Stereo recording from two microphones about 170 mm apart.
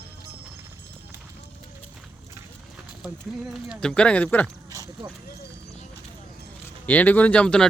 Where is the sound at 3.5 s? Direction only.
Centre (ahead or behind).